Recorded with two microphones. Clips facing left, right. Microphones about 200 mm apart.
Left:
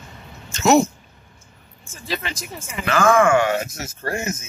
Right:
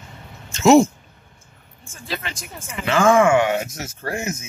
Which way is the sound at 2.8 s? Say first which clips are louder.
Right 1 dB; 25° right (ahead or behind).